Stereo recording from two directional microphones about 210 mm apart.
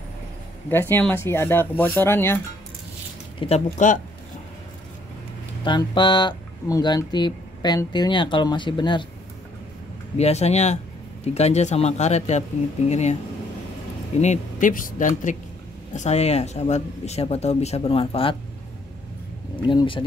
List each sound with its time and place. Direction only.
0.7 s speech: 10° left (ahead or behind)
3.3 s speech: 30° left (ahead or behind)
5.6 s speech: 20° left (ahead or behind)
10.1 s speech: 30° left (ahead or behind)
14.2 s speech: 35° left (ahead or behind)
19.5 s speech: 20° left (ahead or behind)